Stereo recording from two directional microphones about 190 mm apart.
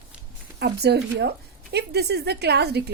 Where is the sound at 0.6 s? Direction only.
60° right (ahead or behind).